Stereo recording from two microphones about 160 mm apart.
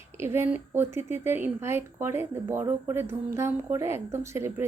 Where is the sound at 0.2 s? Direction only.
15° right (ahead or behind).